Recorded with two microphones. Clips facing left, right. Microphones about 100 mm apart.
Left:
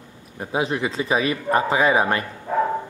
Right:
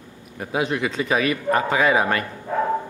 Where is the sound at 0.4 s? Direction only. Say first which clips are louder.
Even; 25° left (ahead or behind).